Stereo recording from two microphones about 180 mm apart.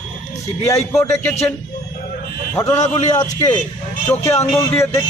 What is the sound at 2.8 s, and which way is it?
Speech, 40° left (ahead or behind).